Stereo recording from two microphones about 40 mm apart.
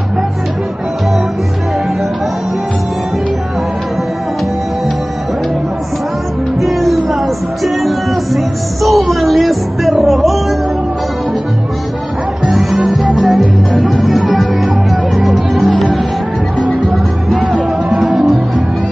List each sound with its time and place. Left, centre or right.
6.6 s music: centre
13.0 s music: right
14.0 s music: centre
17.4 s music: right
18.0 s music: centre